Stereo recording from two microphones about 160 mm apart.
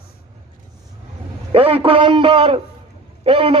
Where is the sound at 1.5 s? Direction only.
35° right (ahead or behind).